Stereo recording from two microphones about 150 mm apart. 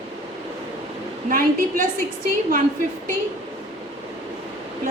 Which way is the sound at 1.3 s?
70° right (ahead or behind).